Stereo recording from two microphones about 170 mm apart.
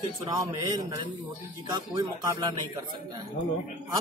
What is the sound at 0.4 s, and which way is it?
A man's voice, 20° right (ahead or behind).